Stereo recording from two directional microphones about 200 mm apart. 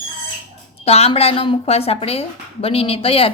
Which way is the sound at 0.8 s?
30° left (ahead or behind).